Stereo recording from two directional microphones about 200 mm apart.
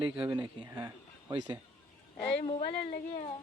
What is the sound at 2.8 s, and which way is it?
Speech, 50° left (ahead or behind).